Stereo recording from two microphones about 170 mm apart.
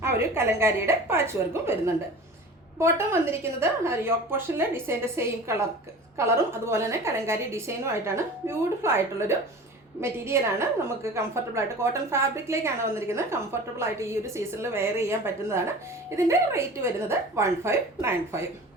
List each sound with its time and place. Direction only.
0.0 s a woman's voice: 15° right (ahead or behind)